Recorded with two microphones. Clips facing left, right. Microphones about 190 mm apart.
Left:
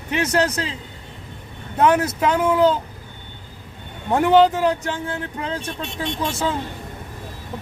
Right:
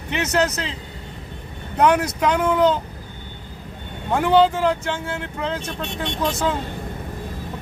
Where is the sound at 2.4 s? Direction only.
5° left (ahead or behind).